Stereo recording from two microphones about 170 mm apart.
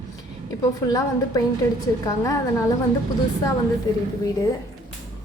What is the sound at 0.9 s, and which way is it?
Speech, 20° left (ahead or behind).